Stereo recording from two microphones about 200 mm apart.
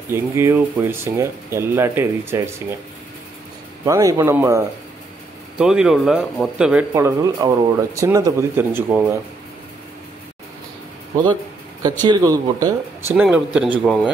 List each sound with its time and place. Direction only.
0.1 s speech: 15° right (ahead or behind)
3.8 s speech: 15° right (ahead or behind)
5.6 s speech: 5° right (ahead or behind)
12.0 s speech: 20° right (ahead or behind)
13.1 s speech: 5° right (ahead or behind)